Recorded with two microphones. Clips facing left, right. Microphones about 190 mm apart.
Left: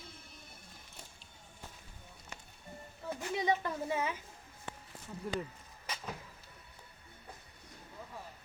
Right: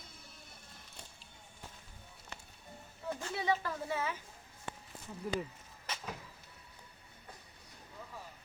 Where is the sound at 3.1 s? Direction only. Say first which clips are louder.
Left 2 dB; 15° left (ahead or behind).